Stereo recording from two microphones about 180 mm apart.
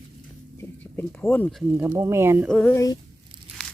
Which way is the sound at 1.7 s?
15° right (ahead or behind).